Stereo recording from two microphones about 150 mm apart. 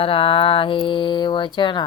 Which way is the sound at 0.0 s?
35° left (ahead or behind).